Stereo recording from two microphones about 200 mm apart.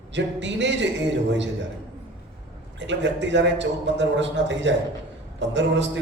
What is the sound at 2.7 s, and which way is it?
A man's voice, 60° right (ahead or behind).